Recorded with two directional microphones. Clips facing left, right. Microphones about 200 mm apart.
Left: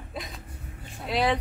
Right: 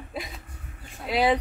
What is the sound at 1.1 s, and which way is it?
Speech, 5° right (ahead or behind).